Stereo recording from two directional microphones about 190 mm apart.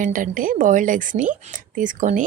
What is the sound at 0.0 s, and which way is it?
A woman's voice, 45° right (ahead or behind).